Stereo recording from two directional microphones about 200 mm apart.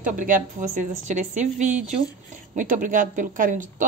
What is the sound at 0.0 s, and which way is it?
Speech, 40° right (ahead or behind).